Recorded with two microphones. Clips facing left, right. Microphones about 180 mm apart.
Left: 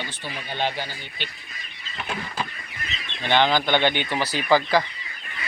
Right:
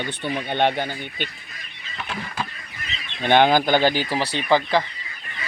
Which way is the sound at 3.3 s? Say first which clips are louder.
Right 4 dB; 50° right (ahead or behind).